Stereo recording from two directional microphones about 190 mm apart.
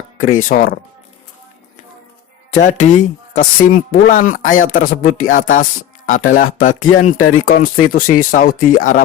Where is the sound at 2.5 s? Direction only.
40° left (ahead or behind).